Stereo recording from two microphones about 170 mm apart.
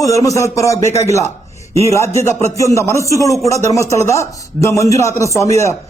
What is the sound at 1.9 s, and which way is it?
A man's voice, 15° left (ahead or behind).